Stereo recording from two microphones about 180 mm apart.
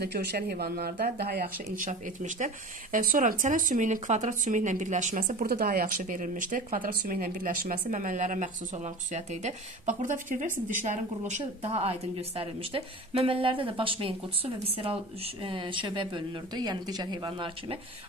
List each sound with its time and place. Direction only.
0.0 s a woman's voice: 65° right (ahead or behind); by 17.7 s 25° right (ahead or behind)